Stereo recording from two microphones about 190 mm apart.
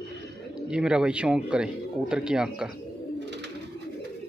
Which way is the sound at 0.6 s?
5° right (ahead or behind).